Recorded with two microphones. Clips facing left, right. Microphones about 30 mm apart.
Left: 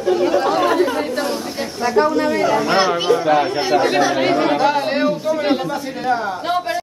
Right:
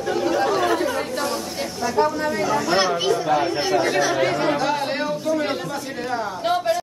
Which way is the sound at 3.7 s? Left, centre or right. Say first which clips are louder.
Left 5 dB; left.